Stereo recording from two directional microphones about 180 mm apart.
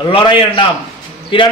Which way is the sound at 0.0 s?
25° left (ahead or behind).